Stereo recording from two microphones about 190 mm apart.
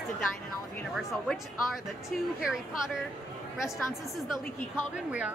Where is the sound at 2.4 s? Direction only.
5° right (ahead or behind).